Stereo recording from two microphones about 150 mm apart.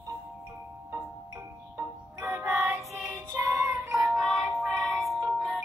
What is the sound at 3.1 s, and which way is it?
Child singing, 20° right (ahead or behind).